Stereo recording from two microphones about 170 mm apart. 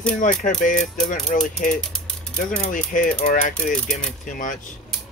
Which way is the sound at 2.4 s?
50° left (ahead or behind).